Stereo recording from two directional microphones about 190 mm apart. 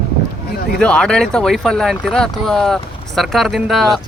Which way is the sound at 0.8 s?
5° left (ahead or behind).